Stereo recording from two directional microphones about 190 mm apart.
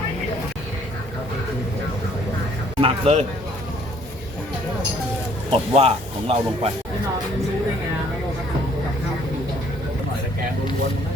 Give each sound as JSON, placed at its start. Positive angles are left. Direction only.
{"t": 2.8, "sound": "speech", "side_deg": -35}
{"t": 5.5, "sound": "speech", "side_deg": -30}